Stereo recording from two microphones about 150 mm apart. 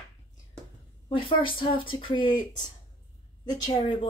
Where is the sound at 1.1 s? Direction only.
35° left (ahead or behind).